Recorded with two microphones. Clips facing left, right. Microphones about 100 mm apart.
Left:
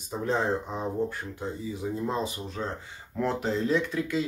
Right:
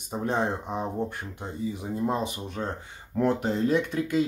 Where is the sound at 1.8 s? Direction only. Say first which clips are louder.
Right 1 dB; 20° right (ahead or behind).